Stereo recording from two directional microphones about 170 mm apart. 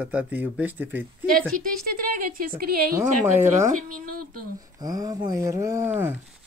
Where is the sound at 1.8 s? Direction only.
60° right (ahead or behind).